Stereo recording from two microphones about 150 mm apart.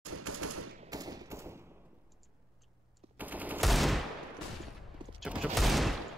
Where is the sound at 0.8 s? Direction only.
25° right (ahead or behind).